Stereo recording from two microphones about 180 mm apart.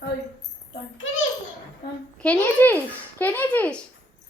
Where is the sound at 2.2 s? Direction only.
10° left (ahead or behind).